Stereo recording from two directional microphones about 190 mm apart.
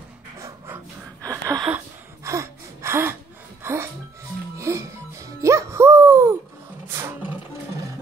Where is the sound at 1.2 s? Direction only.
20° right (ahead or behind).